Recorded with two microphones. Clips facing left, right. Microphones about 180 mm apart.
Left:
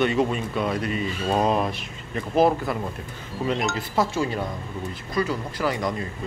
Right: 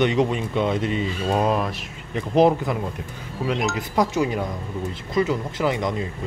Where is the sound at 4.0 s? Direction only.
15° right (ahead or behind).